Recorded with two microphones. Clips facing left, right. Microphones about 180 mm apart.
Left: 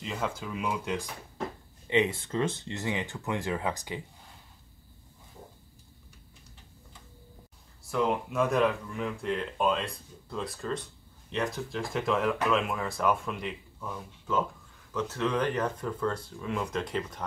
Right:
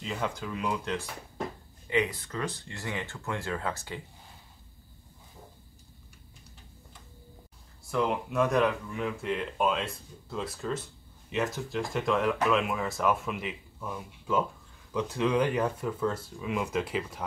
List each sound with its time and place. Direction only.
0.0 s speech: centre (ahead or behind)
1.9 s speech: 25° left (ahead or behind)
7.8 s speech: centre (ahead or behind)